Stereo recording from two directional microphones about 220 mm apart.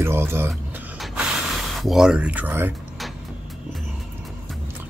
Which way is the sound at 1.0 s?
5° right (ahead or behind).